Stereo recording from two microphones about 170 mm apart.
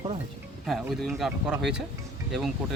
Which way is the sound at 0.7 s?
Centre (ahead or behind).